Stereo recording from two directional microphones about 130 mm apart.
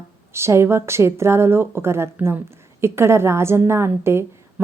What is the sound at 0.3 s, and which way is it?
A woman's voice, 20° right (ahead or behind).